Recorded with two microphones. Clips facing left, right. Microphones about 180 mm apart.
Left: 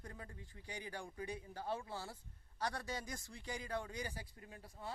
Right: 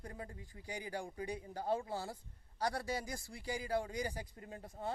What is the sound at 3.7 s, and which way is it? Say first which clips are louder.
Speech: right 7 dB; 35° right (ahead or behind).